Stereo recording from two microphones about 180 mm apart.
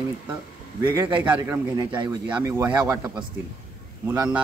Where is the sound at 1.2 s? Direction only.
10° right (ahead or behind).